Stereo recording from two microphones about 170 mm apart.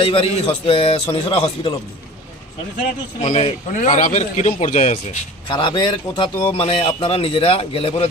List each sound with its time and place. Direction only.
0.0 s a man's voice: 35° left (ahead or behind)
3.2 s a man's voice: 40° left (ahead or behind)
5.5 s a man's voice: 30° left (ahead or behind)